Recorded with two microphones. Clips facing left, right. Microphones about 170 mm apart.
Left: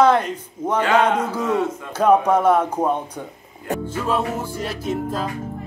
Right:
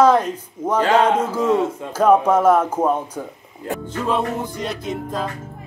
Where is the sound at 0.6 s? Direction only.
10° right (ahead or behind).